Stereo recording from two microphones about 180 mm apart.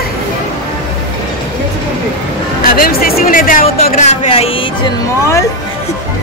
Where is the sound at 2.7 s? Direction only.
55° left (ahead or behind); by 4.9 s 30° left (ahead or behind).